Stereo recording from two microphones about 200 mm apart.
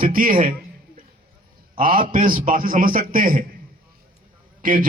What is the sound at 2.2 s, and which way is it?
A man's voice, 45° right (ahead or behind).